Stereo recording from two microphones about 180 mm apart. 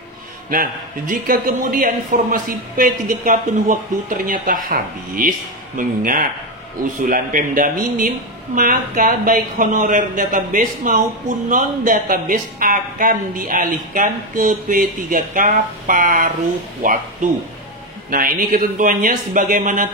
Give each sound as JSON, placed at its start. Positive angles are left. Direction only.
{"t": 0.5, "sound": "speech", "side_deg": -50}